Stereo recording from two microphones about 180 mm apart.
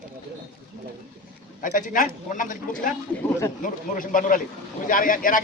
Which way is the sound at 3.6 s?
50° left (ahead or behind).